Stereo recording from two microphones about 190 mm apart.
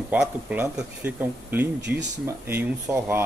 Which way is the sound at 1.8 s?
65° right (ahead or behind).